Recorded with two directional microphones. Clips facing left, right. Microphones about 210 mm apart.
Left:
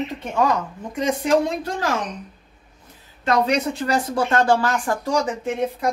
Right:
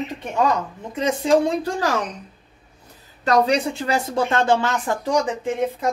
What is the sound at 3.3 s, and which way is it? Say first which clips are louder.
A woman's voice: right 1 dB; 35° right (ahead or behind).